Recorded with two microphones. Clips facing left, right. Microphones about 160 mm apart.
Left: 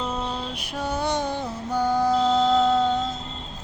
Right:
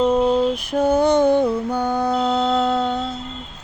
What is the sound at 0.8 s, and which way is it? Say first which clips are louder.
Music: right 10 dB; 50° right (ahead or behind).